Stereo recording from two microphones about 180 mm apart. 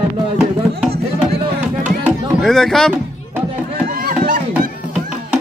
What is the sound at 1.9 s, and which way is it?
Music, centre (ahead or behind).